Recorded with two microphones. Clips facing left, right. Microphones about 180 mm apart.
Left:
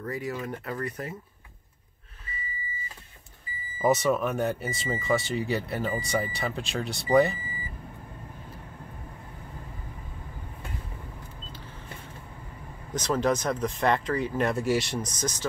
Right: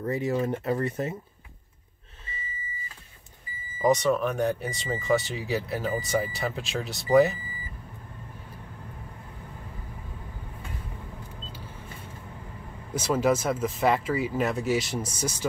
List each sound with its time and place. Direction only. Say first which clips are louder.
0.0 s speech: right 6 dB; 25° right (ahead or behind)
3.8 s speech: right 1 dB; 5° left (ahead or behind)
12.9 s speech: right 2 dB; 10° right (ahead or behind)